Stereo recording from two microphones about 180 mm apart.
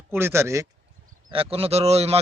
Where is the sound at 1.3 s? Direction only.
30° right (ahead or behind).